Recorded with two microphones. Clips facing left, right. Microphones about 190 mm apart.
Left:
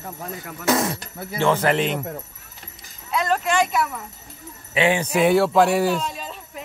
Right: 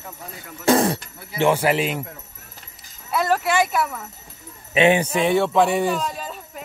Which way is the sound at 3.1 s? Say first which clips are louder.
Right 1 dB; 5° right (ahead or behind).